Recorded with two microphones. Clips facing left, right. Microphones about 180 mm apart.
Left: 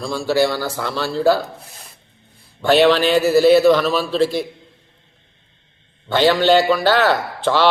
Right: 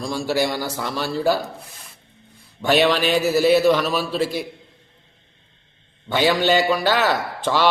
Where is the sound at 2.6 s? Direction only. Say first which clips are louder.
Left 4 dB; 10° right (ahead or behind).